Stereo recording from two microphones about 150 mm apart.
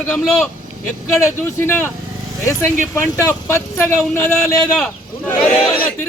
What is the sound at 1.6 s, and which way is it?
Speech, 15° left (ahead or behind).